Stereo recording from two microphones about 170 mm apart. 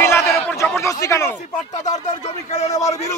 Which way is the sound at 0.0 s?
15° left (ahead or behind).